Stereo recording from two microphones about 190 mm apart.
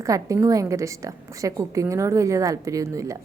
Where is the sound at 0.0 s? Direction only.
15° right (ahead or behind).